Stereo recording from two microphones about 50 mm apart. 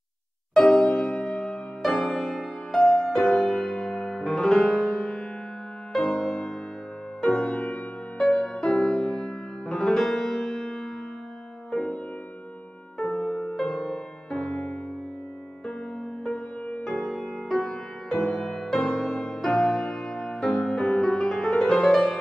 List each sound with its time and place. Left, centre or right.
0.6 s music: centre
0.9 s music: left
13.0 s music: centre
16.8 s music: centre